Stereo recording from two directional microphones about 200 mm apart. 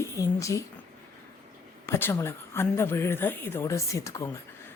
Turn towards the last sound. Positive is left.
turn(degrees=15)  # may be behind; listen again after turning